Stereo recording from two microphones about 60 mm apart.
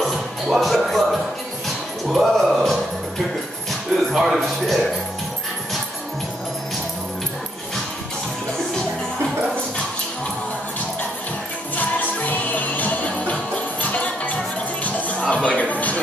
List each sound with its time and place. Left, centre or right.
0.0 s music: centre
4.1 s music: centre
11.7 s music: left